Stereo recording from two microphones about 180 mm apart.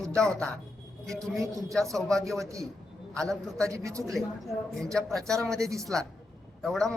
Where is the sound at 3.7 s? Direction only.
15° right (ahead or behind).